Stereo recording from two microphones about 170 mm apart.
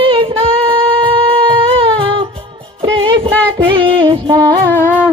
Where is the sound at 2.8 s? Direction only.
30° right (ahead or behind).